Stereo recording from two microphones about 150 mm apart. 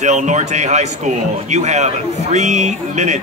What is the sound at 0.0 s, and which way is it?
Speech, 55° right (ahead or behind).